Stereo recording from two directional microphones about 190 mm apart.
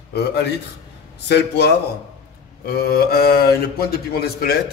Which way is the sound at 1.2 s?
60° left (ahead or behind).